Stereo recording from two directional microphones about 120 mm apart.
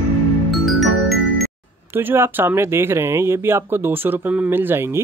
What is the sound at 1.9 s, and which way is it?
Speech, 20° right (ahead or behind).